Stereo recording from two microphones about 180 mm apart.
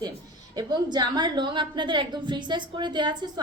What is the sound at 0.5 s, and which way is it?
A woman's voice, 25° right (ahead or behind).